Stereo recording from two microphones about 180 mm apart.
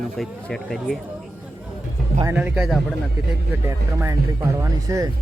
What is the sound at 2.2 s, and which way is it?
Speech, 10° right (ahead or behind).